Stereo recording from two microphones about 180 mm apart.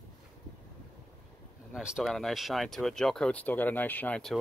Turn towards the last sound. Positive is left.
turn(degrees=5)  # may be behind; listen again after turning